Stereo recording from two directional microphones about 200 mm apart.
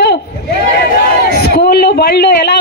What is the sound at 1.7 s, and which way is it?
Speech, 50° left (ahead or behind).